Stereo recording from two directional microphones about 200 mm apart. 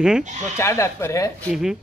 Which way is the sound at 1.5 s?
Centre (ahead or behind).